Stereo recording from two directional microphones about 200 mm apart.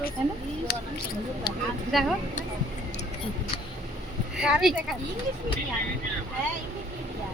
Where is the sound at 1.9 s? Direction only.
Centre (ahead or behind).